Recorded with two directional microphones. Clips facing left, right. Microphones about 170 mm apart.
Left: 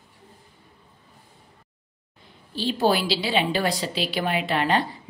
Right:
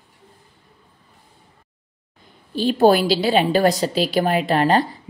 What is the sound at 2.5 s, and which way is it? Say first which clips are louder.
A woman's voice: right 7 dB; 50° right (ahead or behind).